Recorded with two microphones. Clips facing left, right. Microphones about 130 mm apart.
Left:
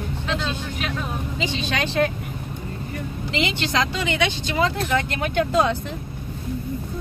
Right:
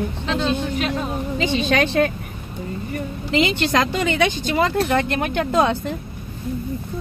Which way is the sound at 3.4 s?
50° right (ahead or behind).